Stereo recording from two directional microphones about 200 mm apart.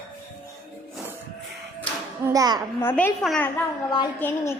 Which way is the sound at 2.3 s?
20° right (ahead or behind).